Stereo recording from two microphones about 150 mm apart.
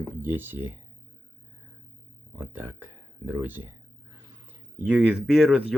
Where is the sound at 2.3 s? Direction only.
15° right (ahead or behind).